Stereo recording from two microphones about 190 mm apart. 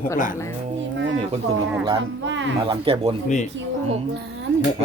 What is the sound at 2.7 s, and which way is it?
Speech, 30° right (ahead or behind).